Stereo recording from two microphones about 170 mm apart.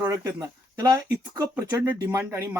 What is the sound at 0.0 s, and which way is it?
Speech, 15° right (ahead or behind).